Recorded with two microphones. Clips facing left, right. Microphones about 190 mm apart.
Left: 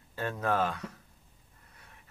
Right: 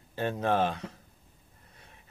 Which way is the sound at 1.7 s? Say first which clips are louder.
Right 1 dB; 25° right (ahead or behind).